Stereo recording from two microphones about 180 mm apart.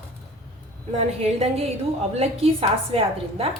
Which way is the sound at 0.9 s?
35° right (ahead or behind).